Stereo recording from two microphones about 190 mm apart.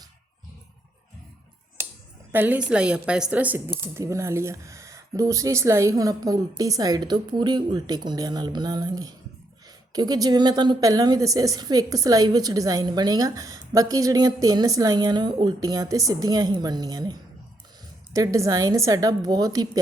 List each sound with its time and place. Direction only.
2.3 s a woman's voice: 10° right (ahead or behind)